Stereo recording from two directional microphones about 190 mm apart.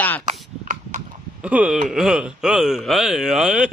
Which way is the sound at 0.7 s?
40° right (ahead or behind).